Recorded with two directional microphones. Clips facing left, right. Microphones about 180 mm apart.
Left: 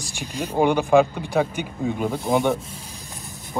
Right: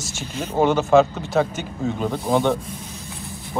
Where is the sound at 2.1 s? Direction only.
Centre (ahead or behind).